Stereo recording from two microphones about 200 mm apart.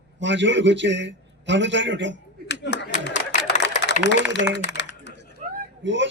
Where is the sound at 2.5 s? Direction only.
65° left (ahead or behind).